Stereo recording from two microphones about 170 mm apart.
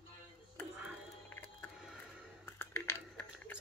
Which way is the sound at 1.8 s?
5° right (ahead or behind).